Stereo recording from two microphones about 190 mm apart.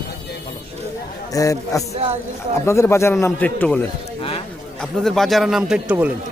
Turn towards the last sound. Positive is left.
turn(degrees=-5)  # may be behind; listen again after turning